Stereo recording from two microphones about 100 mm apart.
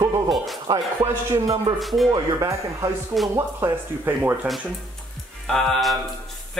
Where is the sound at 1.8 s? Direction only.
Centre (ahead or behind).